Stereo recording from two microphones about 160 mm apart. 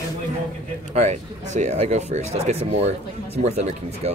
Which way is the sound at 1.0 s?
45° right (ahead or behind).